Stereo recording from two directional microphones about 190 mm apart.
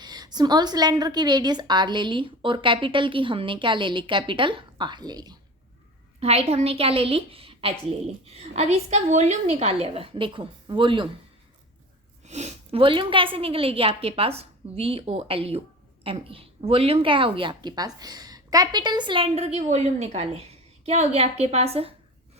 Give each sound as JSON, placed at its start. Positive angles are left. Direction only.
{"t": 0.0, "sound": "a woman's voice", "side_deg": -20}
{"t": 6.1, "sound": "a woman's voice", "side_deg": -30}
{"t": 12.2, "sound": "a woman's voice", "side_deg": -35}